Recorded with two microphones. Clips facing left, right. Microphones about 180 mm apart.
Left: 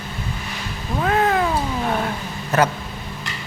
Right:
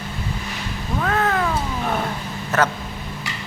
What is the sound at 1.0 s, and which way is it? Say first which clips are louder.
Cat: left 3 dB; 20° left (ahead or behind).